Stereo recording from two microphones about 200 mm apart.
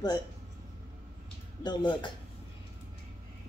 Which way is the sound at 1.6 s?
25° left (ahead or behind).